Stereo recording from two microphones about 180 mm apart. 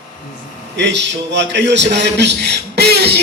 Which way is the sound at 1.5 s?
75° right (ahead or behind).